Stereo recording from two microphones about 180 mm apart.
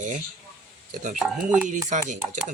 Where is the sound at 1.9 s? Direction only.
40° right (ahead or behind).